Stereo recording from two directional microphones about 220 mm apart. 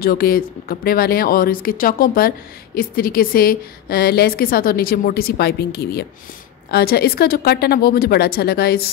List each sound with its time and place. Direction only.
0.0 s speech: 40° left (ahead or behind)